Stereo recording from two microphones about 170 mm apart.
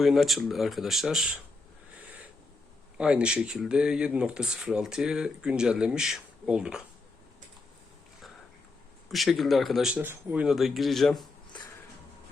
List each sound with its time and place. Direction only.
0.0 s speech: centre (ahead or behind)
2.0 s owl: 10° right (ahead or behind)
3.0 s speech: 5° right (ahead or behind)
9.0 s speech: centre (ahead or behind)